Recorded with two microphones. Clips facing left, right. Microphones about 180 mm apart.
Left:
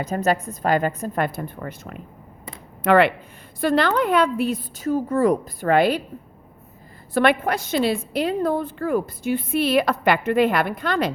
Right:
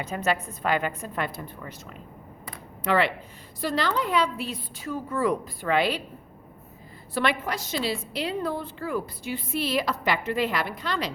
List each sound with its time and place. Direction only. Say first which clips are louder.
0.0 s a woman's voice: left 5 dB; 40° left (ahead or behind)
7.1 s a woman's voice: left 7 dB; 55° left (ahead or behind)